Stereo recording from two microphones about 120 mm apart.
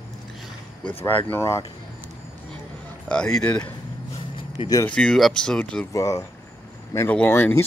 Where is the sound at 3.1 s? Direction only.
5° left (ahead or behind).